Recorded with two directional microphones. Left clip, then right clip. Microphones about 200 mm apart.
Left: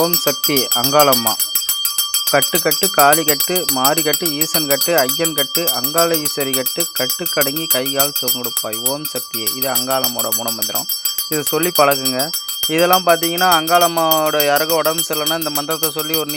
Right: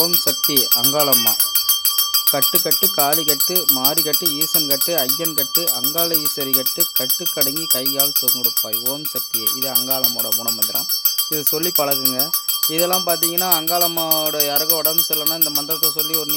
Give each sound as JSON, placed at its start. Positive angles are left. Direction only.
{"t": 0.0, "sound": "music", "side_deg": 15}
{"t": 0.7, "sound": "speech", "side_deg": 25}
{"t": 0.9, "sound": "music", "side_deg": 10}
{"t": 2.3, "sound": "music", "side_deg": 10}
{"t": 11.5, "sound": "music", "side_deg": 10}